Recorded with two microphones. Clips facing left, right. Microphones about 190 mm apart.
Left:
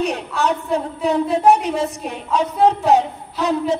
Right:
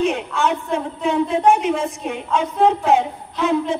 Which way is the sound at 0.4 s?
40° left (ahead or behind).